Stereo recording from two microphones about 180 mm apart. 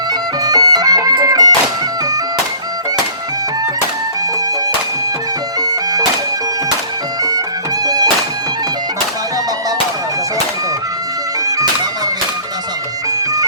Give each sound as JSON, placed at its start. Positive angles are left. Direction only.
{"t": 0.1, "sound": "music", "side_deg": -20}
{"t": 5.5, "sound": "music", "side_deg": -20}
{"t": 7.2, "sound": "music", "side_deg": -20}
{"t": 11.4, "sound": "music", "side_deg": -20}